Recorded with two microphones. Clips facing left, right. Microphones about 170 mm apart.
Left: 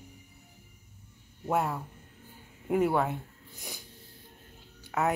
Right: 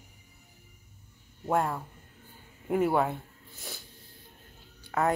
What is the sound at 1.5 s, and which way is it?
Speech, 10° left (ahead or behind).